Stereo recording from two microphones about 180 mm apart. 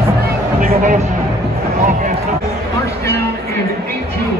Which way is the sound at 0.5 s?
45° right (ahead or behind).